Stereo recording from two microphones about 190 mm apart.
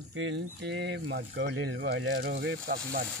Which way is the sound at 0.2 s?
90° right.